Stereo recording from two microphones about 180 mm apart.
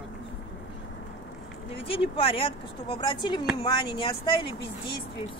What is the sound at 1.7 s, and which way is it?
Speech, 30° left (ahead or behind).